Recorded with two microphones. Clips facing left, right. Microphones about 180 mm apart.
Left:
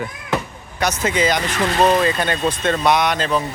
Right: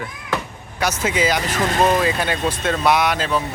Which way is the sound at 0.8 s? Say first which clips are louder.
Left 1 dB; 10° right (ahead or behind).